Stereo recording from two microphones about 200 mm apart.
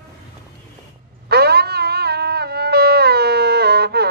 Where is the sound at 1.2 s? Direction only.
55° right (ahead or behind).